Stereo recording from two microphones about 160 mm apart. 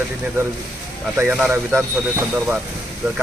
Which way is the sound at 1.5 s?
15° right (ahead or behind).